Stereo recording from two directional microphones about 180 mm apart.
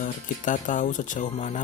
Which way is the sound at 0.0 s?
45° left (ahead or behind).